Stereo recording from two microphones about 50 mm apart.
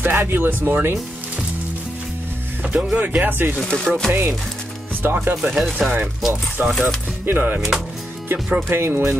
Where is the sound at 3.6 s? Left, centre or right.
Centre.